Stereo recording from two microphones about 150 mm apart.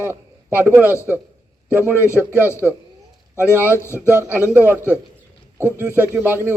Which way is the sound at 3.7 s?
15° left (ahead or behind).